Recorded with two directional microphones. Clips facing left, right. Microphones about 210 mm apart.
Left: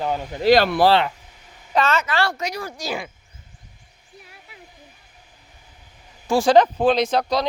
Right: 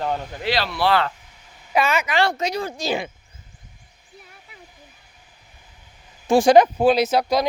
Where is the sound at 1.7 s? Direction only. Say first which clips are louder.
Even; 10° right (ahead or behind).